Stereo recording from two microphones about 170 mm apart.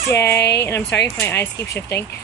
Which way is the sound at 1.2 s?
15° left (ahead or behind).